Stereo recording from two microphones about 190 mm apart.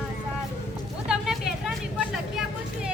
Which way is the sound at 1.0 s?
Centre (ahead or behind).